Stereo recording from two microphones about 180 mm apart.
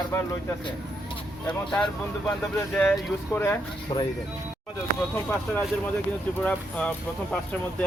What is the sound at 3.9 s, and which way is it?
Speech, 25° left (ahead or behind).